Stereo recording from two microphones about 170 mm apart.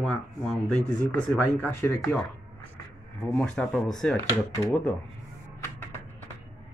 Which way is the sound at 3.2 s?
5° left (ahead or behind).